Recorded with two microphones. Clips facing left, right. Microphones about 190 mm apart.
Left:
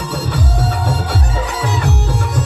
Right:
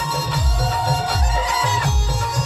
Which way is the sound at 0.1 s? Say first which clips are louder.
Left 4 dB; 60° left (ahead or behind).